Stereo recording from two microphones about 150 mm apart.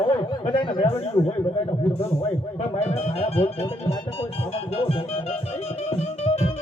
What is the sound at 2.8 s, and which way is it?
Music, 45° left (ahead or behind).